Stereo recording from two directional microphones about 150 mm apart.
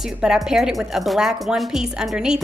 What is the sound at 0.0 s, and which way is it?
A woman's voice, 5° right (ahead or behind).